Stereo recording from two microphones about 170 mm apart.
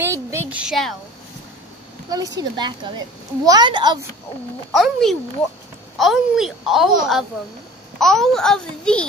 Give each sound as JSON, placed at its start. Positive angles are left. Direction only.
{"t": 0.0, "sound": "a sound", "side_deg": -15}
{"t": 2.0, "sound": "a woman's voice", "side_deg": -20}
{"t": 4.7, "sound": "a woman's voice", "side_deg": 0}